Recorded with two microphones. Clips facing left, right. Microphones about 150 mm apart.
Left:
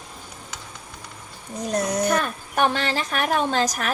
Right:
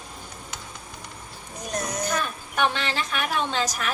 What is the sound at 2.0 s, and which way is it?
Speech, 60° left (ahead or behind).